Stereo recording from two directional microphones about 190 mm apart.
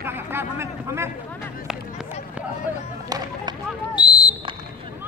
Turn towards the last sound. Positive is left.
turn(degrees=20)  # may be behind; listen again after turning